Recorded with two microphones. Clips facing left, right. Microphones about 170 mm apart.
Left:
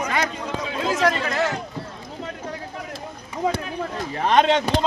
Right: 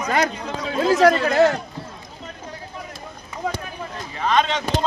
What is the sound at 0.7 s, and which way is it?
Speech, 40° right (ahead or behind).